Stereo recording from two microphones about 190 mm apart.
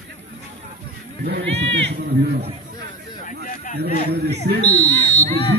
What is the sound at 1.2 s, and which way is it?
Speech, 60° right (ahead or behind).